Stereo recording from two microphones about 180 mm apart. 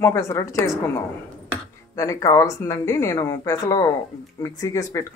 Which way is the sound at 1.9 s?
15° left (ahead or behind).